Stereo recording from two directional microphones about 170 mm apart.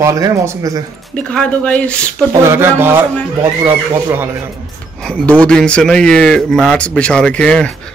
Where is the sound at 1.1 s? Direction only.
5° left (ahead or behind).